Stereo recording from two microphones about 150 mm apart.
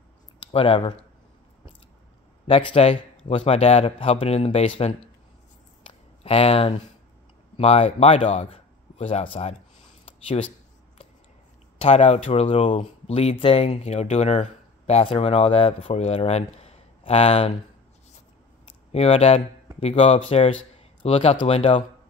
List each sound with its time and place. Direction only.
0.5 s speech: 35° left (ahead or behind)
2.4 s speech: 40° left (ahead or behind)
6.2 s a man's voice: 40° left (ahead or behind)
10.0 s a sound: 40° left (ahead or behind)
11.8 s speech: 50° left (ahead or behind)
18.9 s speech: 40° left (ahead or behind)